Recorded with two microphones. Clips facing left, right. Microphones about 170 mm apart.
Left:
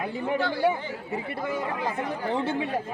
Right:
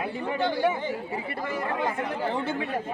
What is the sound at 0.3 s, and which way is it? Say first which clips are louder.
Speech: right 2 dB; 20° right (ahead or behind).